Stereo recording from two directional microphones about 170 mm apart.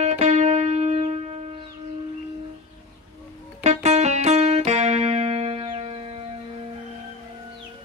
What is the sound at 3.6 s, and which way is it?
Music, 40° right (ahead or behind).